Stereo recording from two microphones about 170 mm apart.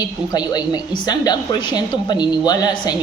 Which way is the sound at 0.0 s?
25° left (ahead or behind).